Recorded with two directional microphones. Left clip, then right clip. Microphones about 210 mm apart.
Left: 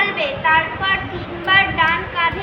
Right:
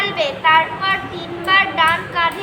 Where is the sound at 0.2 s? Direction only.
30° right (ahead or behind).